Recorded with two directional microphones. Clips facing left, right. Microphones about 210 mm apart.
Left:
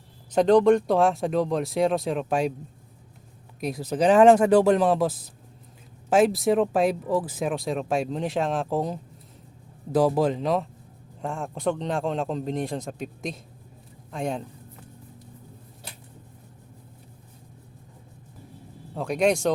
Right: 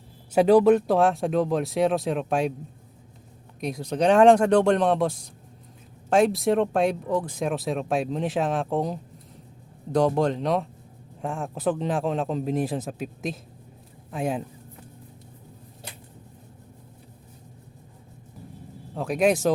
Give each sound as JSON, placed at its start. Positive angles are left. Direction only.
{"t": 0.3, "sound": "speech", "side_deg": -5}
{"t": 3.6, "sound": "speech", "side_deg": 5}
{"t": 18.9, "sound": "speech", "side_deg": 0}